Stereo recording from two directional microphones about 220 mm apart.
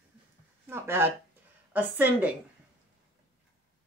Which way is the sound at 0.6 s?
10° right (ahead or behind).